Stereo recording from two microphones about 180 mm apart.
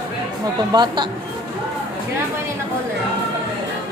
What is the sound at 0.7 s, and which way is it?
Speech, 25° right (ahead or behind).